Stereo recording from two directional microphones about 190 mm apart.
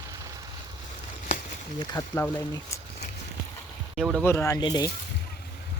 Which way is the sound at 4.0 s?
Centre (ahead or behind).